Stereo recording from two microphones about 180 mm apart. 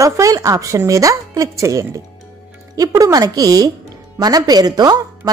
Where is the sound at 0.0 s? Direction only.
15° right (ahead or behind).